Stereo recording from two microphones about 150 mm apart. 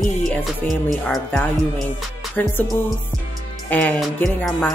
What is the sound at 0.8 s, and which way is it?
Speech, 5° left (ahead or behind).